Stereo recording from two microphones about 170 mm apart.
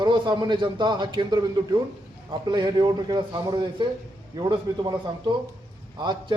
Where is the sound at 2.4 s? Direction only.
25° right (ahead or behind).